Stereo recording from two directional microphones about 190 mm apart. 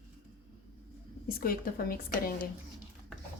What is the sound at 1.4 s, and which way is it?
Speech, 50° left (ahead or behind).